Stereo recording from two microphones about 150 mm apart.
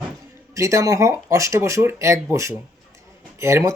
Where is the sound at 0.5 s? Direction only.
20° right (ahead or behind).